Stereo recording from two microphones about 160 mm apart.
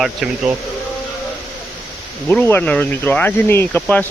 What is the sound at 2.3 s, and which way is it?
Speech, 10° left (ahead or behind).